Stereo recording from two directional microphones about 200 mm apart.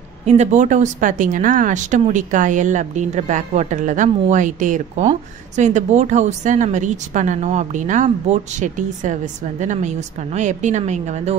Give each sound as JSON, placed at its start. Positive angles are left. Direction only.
{"t": 0.2, "sound": "a woman's voice", "side_deg": -35}